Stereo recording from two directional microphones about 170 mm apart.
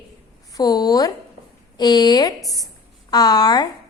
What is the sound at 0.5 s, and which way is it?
A woman's voice, 25° left (ahead or behind).